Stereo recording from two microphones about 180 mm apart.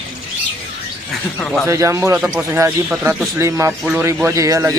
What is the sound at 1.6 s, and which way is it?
Speech, 15° right (ahead or behind).